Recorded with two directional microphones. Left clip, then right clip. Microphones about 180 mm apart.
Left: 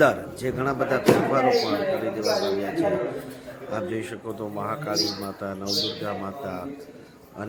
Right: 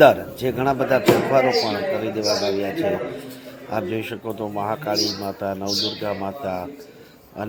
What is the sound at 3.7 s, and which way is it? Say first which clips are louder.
A man's voice: right 4 dB; 15° right (ahead or behind).